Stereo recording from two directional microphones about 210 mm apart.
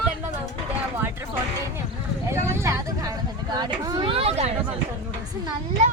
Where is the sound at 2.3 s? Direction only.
10° right (ahead or behind); by 4.5 s 30° right (ahead or behind).